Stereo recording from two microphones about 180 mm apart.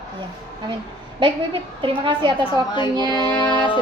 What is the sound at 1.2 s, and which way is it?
A woman's voice, 30° right (ahead or behind).